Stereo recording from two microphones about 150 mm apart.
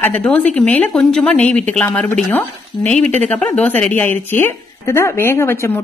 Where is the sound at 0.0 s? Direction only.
10° left (ahead or behind).